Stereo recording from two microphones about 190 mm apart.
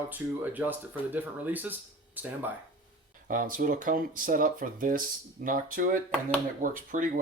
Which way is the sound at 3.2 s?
45° right (ahead or behind).